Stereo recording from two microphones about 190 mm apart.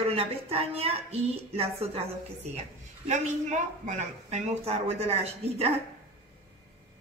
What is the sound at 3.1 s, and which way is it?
A woman's voice, 40° right (ahead or behind).